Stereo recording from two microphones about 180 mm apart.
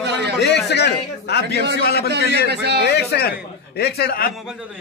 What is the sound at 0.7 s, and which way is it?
A man's voice, 70° left (ahead or behind).